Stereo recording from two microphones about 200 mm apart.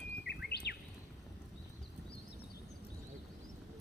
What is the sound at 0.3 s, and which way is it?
Bird, 55° left (ahead or behind).